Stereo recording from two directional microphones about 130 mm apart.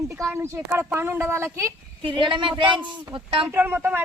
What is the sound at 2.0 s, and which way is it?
Speech, 35° right (ahead or behind).